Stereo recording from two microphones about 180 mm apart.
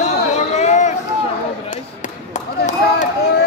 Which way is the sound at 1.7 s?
45° left (ahead or behind).